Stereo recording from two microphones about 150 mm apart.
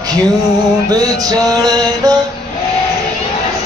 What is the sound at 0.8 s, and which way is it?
Mantra, 25° right (ahead or behind).